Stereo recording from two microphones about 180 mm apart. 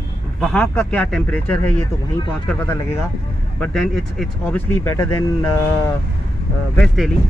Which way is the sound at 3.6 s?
Centre (ahead or behind).